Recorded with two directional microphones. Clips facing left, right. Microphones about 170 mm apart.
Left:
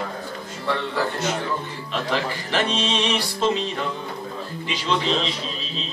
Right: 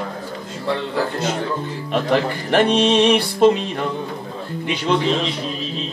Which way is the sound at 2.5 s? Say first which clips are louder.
Right 9 dB; 60° right (ahead or behind).